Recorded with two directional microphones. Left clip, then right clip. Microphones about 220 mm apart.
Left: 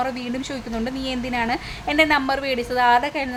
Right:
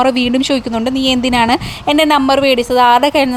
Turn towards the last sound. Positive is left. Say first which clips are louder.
# right 9 dB
turn(degrees=-35)  # may be behind; listen again after turning